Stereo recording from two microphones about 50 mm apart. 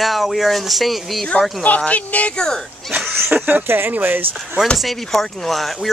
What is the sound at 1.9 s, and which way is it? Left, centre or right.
Speech, left.